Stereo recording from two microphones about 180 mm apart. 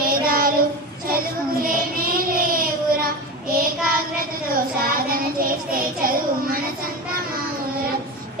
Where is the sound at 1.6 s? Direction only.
50° right (ahead or behind).